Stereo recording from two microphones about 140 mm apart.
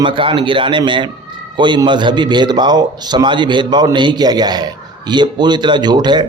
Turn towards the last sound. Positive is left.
turn(degrees=-30)  # may be behind; listen again after turning